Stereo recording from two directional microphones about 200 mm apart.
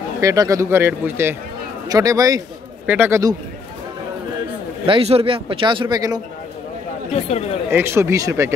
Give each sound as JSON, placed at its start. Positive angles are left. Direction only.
{"t": 0.2, "sound": "speech", "side_deg": -15}
{"t": 4.8, "sound": "a man's voice", "side_deg": -30}
{"t": 7.2, "sound": "speech", "side_deg": 30}
{"t": 7.7, "sound": "speech", "side_deg": -10}